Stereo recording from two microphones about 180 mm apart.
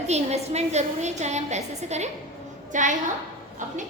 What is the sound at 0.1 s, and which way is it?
A woman's voice, 35° right (ahead or behind).